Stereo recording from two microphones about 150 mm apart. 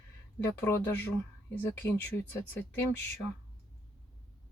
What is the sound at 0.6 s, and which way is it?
Speech, 15° left (ahead or behind).